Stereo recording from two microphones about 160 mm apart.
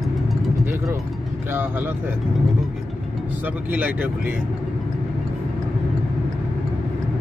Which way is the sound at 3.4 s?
10° right (ahead or behind).